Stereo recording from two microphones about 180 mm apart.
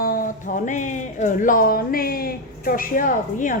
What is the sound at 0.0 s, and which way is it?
Speech, 50° left (ahead or behind).